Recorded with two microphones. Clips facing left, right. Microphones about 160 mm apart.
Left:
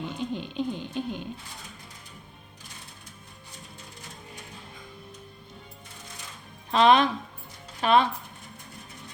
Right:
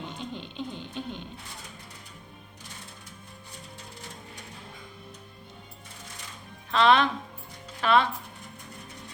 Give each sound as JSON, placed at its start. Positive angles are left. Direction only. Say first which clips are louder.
{"t": 0.2, "sound": "music", "louder": "left 8 dB", "side_deg": 10}
{"t": 6.7, "sound": "speech", "louder": "left 2 dB", "side_deg": 15}